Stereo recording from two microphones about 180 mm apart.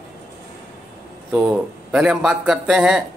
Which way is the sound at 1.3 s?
5° right (ahead or behind).